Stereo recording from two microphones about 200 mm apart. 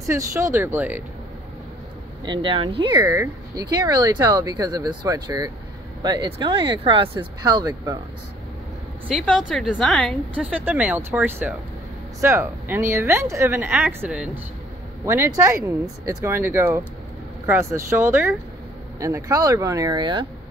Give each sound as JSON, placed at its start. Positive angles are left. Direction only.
{"t": 0.1, "sound": "a woman's voice", "side_deg": -15}
{"t": 2.2, "sound": "speech", "side_deg": -25}
{"t": 9.1, "sound": "a woman's voice", "side_deg": 0}